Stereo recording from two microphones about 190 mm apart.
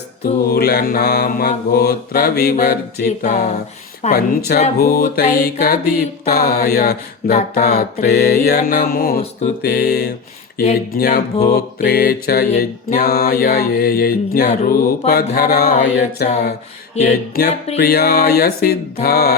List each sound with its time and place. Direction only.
0.4 s mantra: 55° left (ahead or behind)
3.2 s music: 40° left (ahead or behind)
4.1 s mantra: 55° left (ahead or behind)
7.3 s music: 40° left (ahead or behind)
8.0 s mantra: 60° left (ahead or behind)
17.0 s music: 35° left (ahead or behind)
17.7 s mantra: 55° left (ahead or behind)